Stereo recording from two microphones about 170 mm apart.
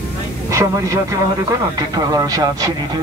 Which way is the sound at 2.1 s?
20° right (ahead or behind).